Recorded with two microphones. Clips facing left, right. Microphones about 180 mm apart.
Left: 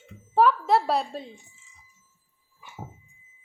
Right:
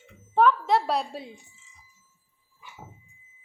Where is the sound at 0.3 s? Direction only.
5° left (ahead or behind).